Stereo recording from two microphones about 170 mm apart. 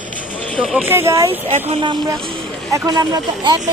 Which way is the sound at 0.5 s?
Centre (ahead or behind).